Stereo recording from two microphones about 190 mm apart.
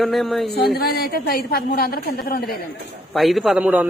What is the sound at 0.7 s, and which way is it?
A woman's voice, 55° left (ahead or behind).